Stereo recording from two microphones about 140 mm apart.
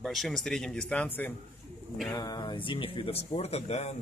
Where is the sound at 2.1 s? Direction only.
30° left (ahead or behind); by 4.0 s 50° left (ahead or behind).